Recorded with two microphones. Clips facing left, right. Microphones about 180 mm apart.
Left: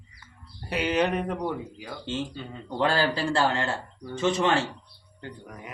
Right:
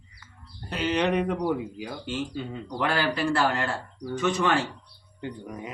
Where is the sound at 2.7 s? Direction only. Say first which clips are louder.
Left 3 dB; 30° left (ahead or behind).